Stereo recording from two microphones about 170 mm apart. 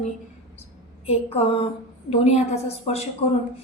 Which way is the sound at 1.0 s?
35° left (ahead or behind).